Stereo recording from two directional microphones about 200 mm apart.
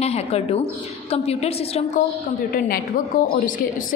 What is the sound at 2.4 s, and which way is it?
Speech, 45° left (ahead or behind).